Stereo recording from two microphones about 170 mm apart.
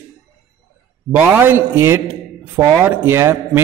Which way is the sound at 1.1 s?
10° right (ahead or behind).